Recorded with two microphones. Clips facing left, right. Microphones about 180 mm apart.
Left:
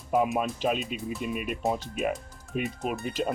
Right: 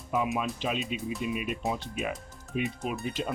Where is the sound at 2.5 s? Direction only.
50° left (ahead or behind).